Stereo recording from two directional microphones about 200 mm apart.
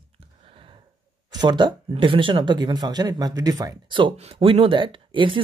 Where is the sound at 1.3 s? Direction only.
20° right (ahead or behind).